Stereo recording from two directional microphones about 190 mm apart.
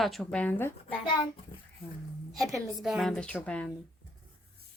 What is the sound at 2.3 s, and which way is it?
A woman's voice, centre (ahead or behind).